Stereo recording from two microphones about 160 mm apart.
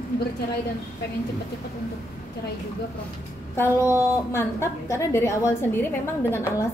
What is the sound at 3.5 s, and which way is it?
Speech, 15° left (ahead or behind).